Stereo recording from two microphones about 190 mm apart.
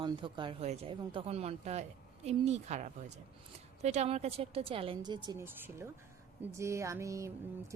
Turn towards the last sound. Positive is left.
turn(degrees=-15)  # may be behind; listen again after turning